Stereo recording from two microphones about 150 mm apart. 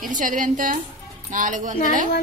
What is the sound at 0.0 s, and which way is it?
A woman's voice, 65° right (ahead or behind).